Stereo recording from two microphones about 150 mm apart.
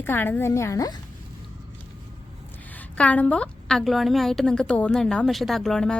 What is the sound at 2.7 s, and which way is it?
A woman's voice, 10° left (ahead or behind).